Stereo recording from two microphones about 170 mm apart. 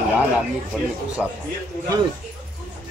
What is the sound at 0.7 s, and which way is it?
Speech, centre (ahead or behind).